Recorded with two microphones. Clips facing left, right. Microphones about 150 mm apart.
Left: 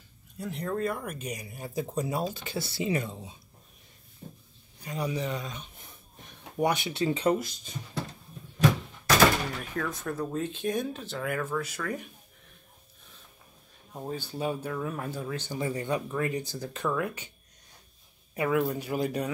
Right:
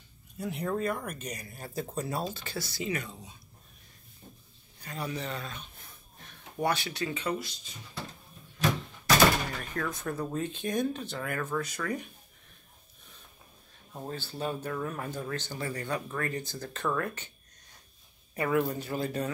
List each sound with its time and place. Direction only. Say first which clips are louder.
0.4 s speech: left 1 dB; 5° right (ahead or behind); by 2.6 s 15° left (ahead or behind)
2.6 s speech: left 5 dB; 25° left (ahead or behind)
4.8 s speech: left 4 dB; 15° left (ahead or behind)
7.2 s speech: left 7 dB; 45° left (ahead or behind)
9.6 s speech: left 1 dB; centre (ahead or behind)
13.9 s speech: left 3 dB; 10° left (ahead or behind)
18.3 s speech: left 1 dB; 5° left (ahead or behind)